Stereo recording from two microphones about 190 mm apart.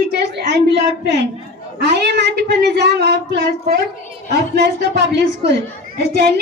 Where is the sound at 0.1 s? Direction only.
60° right (ahead or behind).